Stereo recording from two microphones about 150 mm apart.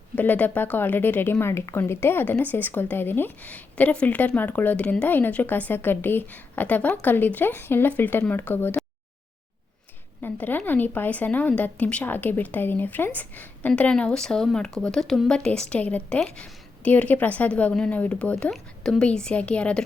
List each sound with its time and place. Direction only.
0.2 s a woman's voice: 10° left (ahead or behind)
10.2 s a woman's voice: 10° left (ahead or behind)